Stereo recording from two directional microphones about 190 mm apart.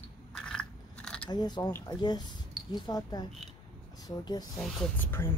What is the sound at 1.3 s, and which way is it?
Speech, 20° left (ahead or behind).